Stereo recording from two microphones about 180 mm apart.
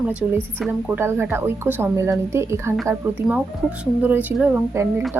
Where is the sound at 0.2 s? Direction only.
10° right (ahead or behind).